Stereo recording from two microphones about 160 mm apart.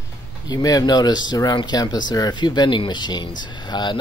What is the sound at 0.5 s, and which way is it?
Speech, 25° left (ahead or behind).